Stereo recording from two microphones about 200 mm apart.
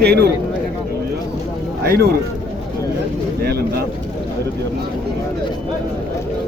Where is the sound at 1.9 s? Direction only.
50° right (ahead or behind).